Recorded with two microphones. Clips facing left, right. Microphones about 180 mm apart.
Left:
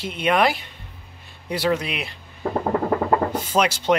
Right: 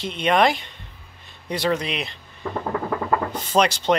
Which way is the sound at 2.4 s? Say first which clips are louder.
Left 4 dB; 40° left (ahead or behind).